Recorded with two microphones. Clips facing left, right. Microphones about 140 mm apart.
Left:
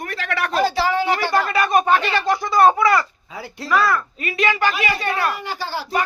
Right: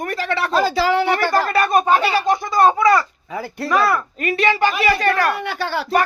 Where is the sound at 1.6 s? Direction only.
35° right (ahead or behind).